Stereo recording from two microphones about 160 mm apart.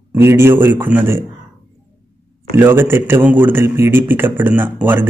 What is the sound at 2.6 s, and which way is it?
Speech, 15° right (ahead or behind).